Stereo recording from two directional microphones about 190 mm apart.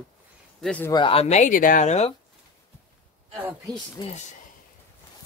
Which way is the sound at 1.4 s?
45° left (ahead or behind).